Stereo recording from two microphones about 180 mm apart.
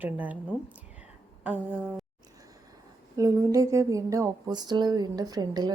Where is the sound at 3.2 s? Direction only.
20° right (ahead or behind).